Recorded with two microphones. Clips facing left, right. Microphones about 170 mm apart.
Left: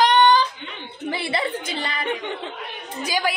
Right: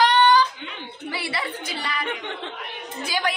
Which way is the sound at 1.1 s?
25° left (ahead or behind).